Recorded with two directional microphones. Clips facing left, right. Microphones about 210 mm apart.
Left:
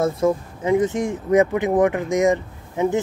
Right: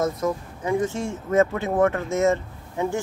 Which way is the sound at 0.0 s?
25° left (ahead or behind).